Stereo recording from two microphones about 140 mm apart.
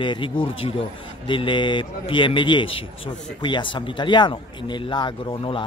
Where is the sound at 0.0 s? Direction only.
35° left (ahead or behind).